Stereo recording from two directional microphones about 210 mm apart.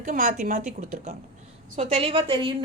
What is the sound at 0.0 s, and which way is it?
A woman's voice, 40° right (ahead or behind).